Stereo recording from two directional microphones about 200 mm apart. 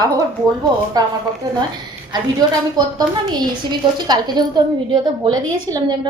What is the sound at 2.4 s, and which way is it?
A woman's voice, 20° right (ahead or behind).